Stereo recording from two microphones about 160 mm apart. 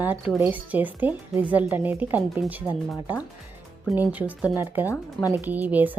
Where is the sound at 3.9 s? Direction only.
10° right (ahead or behind).